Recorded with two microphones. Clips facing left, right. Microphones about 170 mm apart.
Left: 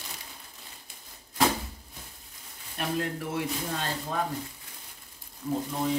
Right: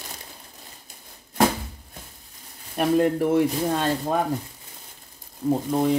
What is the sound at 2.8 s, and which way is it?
Speech, 50° right (ahead or behind).